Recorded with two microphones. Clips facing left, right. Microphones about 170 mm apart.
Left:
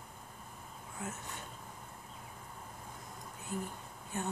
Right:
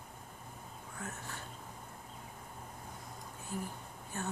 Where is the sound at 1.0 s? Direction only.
20° left (ahead or behind).